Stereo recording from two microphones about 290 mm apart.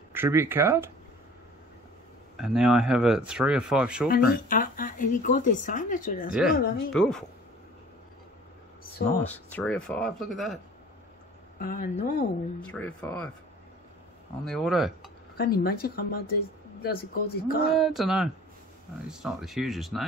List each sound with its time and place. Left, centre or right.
0.1 s speech: centre
2.3 s speech: centre
4.1 s speech: left
6.9 s speech: centre
9.2 s speech: centre
11.5 s speech: left
12.7 s speech: centre
14.4 s speech: centre
15.3 s speech: left
17.7 s speech: centre